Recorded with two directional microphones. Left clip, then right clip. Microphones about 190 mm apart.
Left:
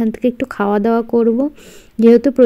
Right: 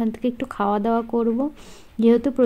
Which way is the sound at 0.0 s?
25° left (ahead or behind).